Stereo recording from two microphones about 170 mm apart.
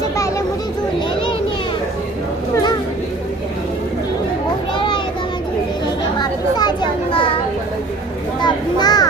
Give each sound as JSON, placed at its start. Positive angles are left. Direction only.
{"t": 4.7, "sound": "child singing", "side_deg": 30}
{"t": 6.1, "sound": "a sound", "side_deg": 25}
{"t": 8.4, "sound": "children playing", "side_deg": 25}